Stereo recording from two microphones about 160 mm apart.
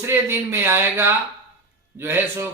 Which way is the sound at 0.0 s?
15° right (ahead or behind).